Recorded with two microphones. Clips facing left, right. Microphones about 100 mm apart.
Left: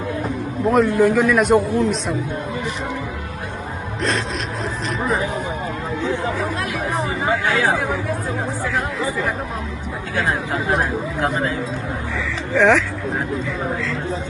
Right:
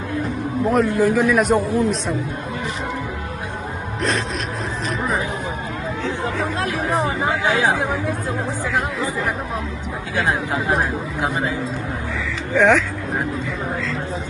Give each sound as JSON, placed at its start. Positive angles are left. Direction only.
{"t": 0.7, "sound": "a man's voice", "side_deg": 0}
{"t": 7.4, "sound": "speech", "side_deg": -20}
{"t": 10.2, "sound": "a man's voice", "side_deg": 0}
{"t": 12.5, "sound": "a man's voice", "side_deg": 0}